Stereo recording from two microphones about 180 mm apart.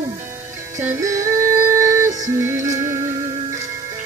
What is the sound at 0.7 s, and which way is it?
Music, 15° right (ahead or behind).